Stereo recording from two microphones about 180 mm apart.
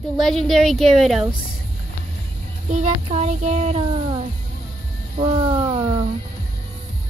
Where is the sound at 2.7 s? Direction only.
40° right (ahead or behind).